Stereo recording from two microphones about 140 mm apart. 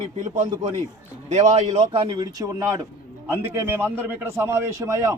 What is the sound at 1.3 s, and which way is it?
A man's voice, 50° right (ahead or behind).